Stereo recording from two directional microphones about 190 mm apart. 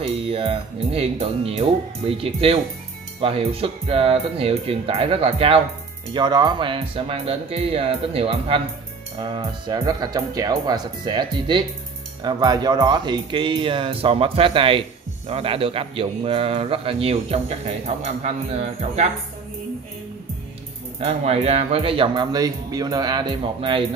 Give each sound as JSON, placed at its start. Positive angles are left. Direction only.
{"t": 0.0, "sound": "speech", "side_deg": -30}
{"t": 21.0, "sound": "speech", "side_deg": -35}